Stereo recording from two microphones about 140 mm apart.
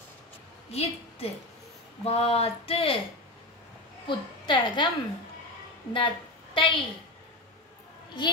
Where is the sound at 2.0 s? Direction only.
45° left (ahead or behind).